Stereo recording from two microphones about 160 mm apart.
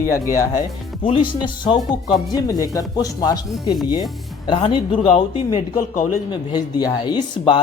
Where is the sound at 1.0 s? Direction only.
30° left (ahead or behind).